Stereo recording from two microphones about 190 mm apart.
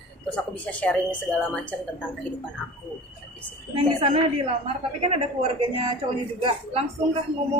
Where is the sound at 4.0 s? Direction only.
30° right (ahead or behind).